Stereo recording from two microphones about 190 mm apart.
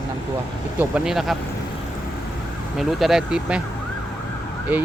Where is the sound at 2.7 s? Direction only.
Centre (ahead or behind).